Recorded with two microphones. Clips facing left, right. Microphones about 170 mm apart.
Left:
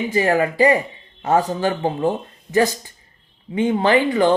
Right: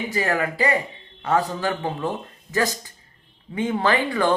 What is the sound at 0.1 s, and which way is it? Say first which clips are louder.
Speech: left 6 dB; 25° left (ahead or behind).